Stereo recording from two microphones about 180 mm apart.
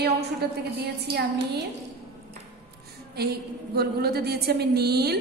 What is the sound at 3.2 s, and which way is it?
A woman's voice, 60° right (ahead or behind).